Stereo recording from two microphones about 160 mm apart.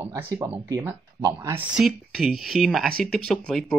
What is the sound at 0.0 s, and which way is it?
Speech, 15° right (ahead or behind).